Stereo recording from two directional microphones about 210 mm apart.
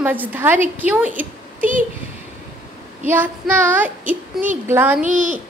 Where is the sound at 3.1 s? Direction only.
10° right (ahead or behind).